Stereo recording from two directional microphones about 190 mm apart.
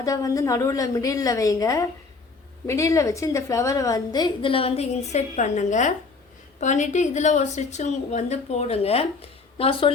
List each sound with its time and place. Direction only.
0.0 s a woman's voice: 15° left (ahead or behind)